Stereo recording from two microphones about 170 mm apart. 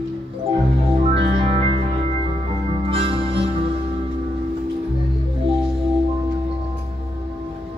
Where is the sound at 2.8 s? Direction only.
35° right (ahead or behind).